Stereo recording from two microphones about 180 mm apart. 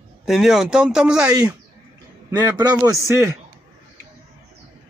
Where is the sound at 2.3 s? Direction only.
20° right (ahead or behind).